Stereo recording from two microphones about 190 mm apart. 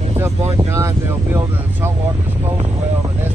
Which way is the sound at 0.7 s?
15° right (ahead or behind).